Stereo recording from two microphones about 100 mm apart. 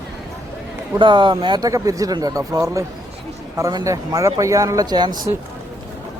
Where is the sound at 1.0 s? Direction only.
55° right (ahead or behind).